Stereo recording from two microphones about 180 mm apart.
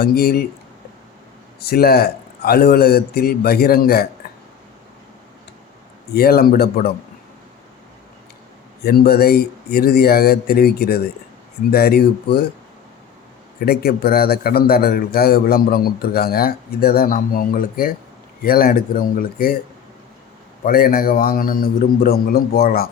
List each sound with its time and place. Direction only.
0.0 s a man's voice: 60° left (ahead or behind)
1.6 s a man's voice: 60° left (ahead or behind)
4.2 s burping: 55° left (ahead or behind)
6.1 s a man's voice: 60° left (ahead or behind)
8.8 s a man's voice: 60° left (ahead or behind)
13.7 s a man's voice: 60° left (ahead or behind)
20.7 s a man's voice: 55° left (ahead or behind)